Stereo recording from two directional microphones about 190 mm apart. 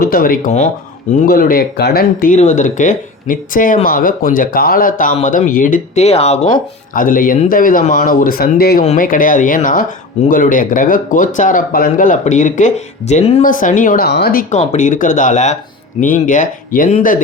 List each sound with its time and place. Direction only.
0.0 s speech: 50° left (ahead or behind)
1.3 s speech: 50° left (ahead or behind); by 6.5 s 35° left (ahead or behind)
6.9 s speech: 45° left (ahead or behind)
8.8 s speech: 40° left (ahead or behind)
14.5 s speech: 40° left (ahead or behind)